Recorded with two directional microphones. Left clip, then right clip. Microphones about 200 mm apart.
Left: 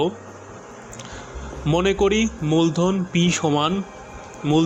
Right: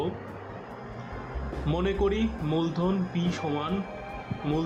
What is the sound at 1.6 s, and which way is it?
Speech, 40° left (ahead or behind).